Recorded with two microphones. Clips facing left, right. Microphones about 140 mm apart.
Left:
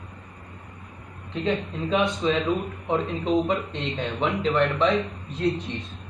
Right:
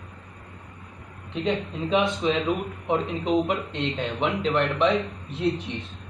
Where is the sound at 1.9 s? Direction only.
5° right (ahead or behind).